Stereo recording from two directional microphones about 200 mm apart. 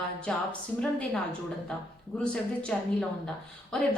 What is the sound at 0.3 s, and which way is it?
Speech, 5° left (ahead or behind).